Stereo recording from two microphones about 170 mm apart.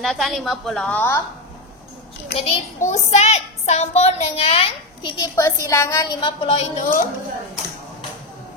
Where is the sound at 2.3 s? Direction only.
45° left (ahead or behind).